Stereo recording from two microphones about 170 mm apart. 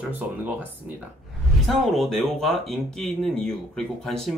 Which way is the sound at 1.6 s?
Centre (ahead or behind).